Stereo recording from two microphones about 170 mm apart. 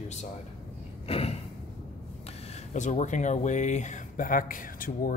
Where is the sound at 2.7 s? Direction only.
45° left (ahead or behind).